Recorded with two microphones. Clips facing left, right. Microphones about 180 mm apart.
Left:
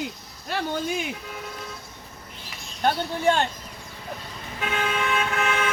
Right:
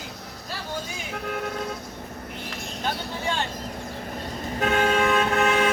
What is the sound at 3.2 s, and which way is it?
Speech, 55° left (ahead or behind).